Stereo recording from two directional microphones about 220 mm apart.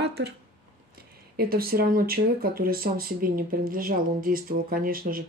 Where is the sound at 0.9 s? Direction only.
45° right (ahead or behind).